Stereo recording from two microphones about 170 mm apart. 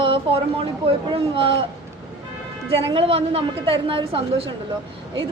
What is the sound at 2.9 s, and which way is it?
A woman's voice, 30° right (ahead or behind).